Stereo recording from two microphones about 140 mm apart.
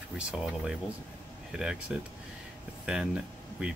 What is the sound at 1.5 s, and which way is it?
Speech, 5° right (ahead or behind).